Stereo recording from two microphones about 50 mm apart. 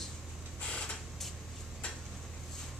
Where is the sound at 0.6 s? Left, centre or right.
Left.